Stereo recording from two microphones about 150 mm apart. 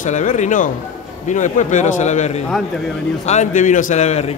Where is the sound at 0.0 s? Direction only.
55° left (ahead or behind).